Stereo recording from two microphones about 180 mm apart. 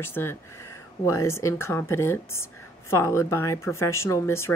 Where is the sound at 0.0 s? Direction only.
10° left (ahead or behind).